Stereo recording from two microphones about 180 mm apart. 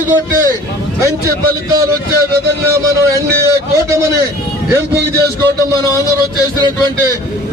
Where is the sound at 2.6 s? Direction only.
15° right (ahead or behind).